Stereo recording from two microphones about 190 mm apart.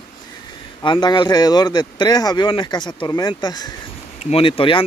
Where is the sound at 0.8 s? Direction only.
25° left (ahead or behind).